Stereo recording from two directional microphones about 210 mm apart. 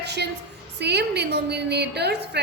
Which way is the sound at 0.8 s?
55° right (ahead or behind).